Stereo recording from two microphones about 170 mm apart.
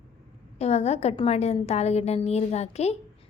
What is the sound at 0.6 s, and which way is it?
A woman's voice, 40° left (ahead or behind).